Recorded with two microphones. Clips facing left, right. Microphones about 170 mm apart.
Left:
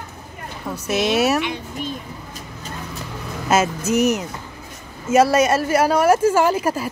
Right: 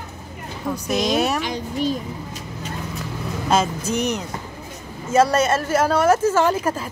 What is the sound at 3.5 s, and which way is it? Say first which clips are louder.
Speech: left 2 dB; 5° left (ahead or behind).